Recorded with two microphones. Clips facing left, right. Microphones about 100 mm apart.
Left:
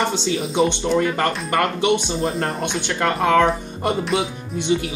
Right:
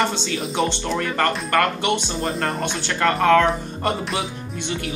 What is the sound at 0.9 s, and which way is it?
Speech, 15° left (ahead or behind).